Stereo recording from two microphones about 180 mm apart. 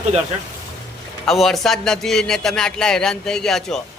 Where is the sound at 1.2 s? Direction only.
Centre (ahead or behind).